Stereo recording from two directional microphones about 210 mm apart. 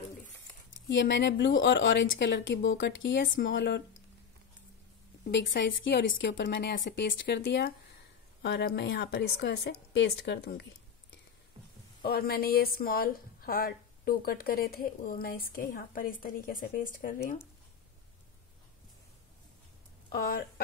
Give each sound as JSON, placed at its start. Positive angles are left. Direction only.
{"t": 0.9, "sound": "speech", "side_deg": 55}
{"t": 5.5, "sound": "a woman's voice", "side_deg": 55}
{"t": 20.1, "sound": "speech", "side_deg": 45}